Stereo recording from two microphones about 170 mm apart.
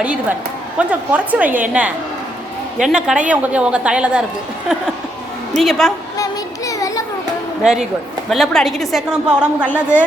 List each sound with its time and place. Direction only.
0.0 s a woman's voice: 5° right (ahead or behind)
2.7 s a woman's voice: 5° right (ahead or behind)
5.5 s a woman's voice: centre (ahead or behind)
6.7 s children playing: 20° left (ahead or behind)
7.6 s a woman's voice: 5° right (ahead or behind)